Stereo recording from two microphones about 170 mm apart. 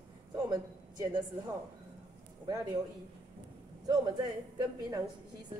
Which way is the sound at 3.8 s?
20° right (ahead or behind).